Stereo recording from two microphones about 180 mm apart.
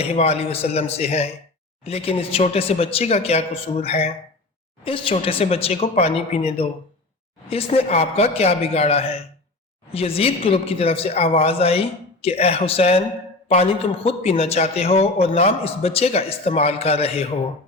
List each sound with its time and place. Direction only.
0.0 s a man's voice: 35° left (ahead or behind)